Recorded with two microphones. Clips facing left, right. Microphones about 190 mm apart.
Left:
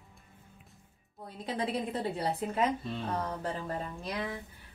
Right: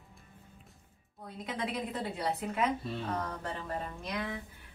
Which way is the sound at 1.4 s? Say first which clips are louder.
Left 3 dB; 30° left (ahead or behind).